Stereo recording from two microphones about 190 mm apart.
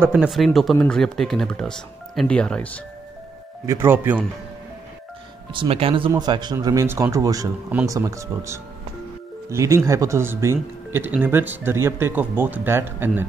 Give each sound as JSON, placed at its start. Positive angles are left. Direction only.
{"t": 0.0, "sound": "speech", "side_deg": -5}
{"t": 3.6, "sound": "speech", "side_deg": -10}
{"t": 5.5, "sound": "speech", "side_deg": -30}